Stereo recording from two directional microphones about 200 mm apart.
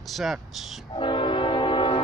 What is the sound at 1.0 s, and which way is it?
Train, 25° left (ahead or behind).